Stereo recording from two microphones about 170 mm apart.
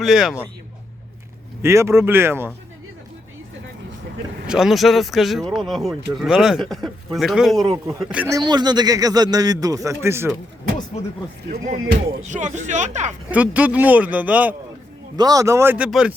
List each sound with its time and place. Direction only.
0.0 s speech: centre (ahead or behind)
1.6 s speech: 15° right (ahead or behind)
4.4 s speech: 5° right (ahead or behind)
8.1 s speech: 10° right (ahead or behind)
8.4 s speech: 25° right (ahead or behind)
11.5 s speech: 55° right (ahead or behind)
13.3 s speech: 10° right (ahead or behind)
15.1 s speech: 20° right (ahead or behind); by 16.1 s 5° right (ahead or behind)